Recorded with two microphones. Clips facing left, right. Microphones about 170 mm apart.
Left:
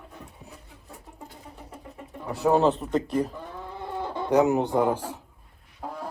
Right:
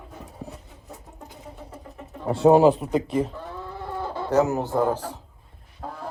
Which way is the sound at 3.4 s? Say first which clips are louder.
Right 2 dB; 15° left (ahead or behind).